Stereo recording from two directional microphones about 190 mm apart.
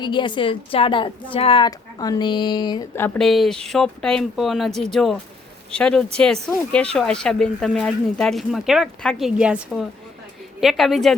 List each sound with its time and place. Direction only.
0.0 s a woman's voice: 25° left (ahead or behind)
3.0 s speech: centre (ahead or behind)